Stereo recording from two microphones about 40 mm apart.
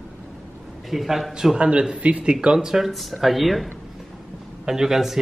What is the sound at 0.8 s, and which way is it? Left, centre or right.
Speech, centre.